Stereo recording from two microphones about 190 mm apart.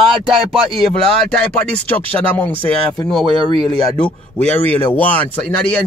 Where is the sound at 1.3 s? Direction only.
5° left (ahead or behind).